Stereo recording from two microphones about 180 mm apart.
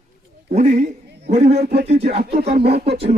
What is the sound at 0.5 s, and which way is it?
A man's voice, 40° right (ahead or behind).